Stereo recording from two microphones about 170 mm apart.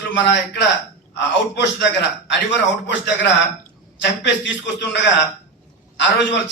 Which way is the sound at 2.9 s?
90° left.